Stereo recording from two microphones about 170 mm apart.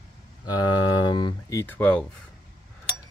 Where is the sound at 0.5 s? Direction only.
25° left (ahead or behind).